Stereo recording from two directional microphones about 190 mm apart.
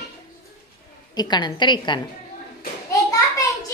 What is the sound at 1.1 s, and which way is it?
Speech, 20° left (ahead or behind).